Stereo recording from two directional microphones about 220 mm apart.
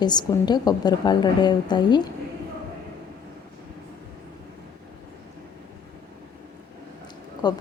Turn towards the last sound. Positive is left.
turn(degrees=20)  # may be behind; listen again after turning